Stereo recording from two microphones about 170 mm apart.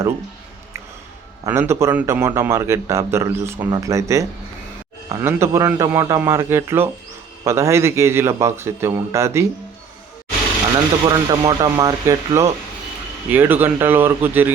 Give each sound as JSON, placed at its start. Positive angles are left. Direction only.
{"t": 1.5, "sound": "speech", "side_deg": -15}
{"t": 11.0, "sound": "speech", "side_deg": -25}